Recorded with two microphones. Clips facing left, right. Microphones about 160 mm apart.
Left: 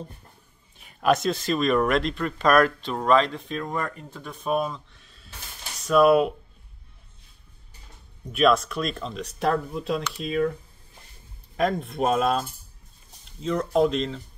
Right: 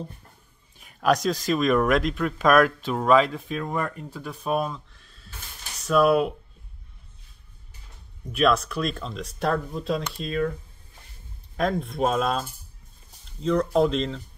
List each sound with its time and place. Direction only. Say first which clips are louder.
0.7 s speech: even; centre (ahead or behind)
8.3 s speech: left 1 dB; centre (ahead or behind)
11.5 s speech: left 1 dB; centre (ahead or behind)